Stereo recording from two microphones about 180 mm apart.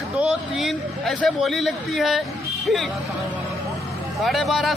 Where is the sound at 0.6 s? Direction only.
Centre (ahead or behind).